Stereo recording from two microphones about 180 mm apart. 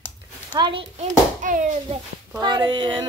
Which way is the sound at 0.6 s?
25° right (ahead or behind).